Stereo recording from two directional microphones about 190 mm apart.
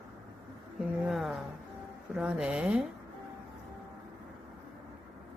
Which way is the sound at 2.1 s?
5° right (ahead or behind).